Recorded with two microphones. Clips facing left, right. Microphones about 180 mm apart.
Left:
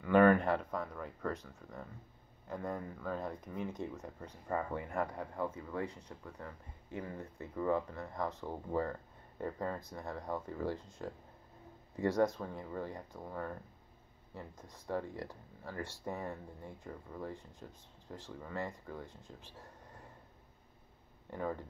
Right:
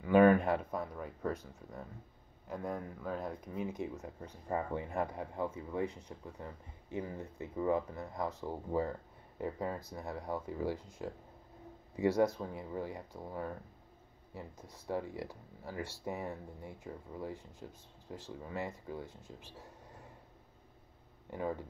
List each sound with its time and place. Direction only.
0.0 s speech: 10° right (ahead or behind)
4.5 s speech: 20° right (ahead or behind)
21.3 s speech: 15° right (ahead or behind)